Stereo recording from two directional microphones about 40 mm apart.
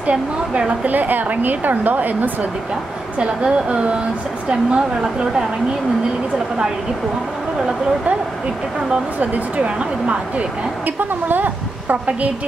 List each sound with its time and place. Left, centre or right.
0.0 s a woman's voice: right
0.8 s a woman's voice: right
3.2 s a woman's voice: right
9.2 s speech: right
11.0 s a woman's voice: right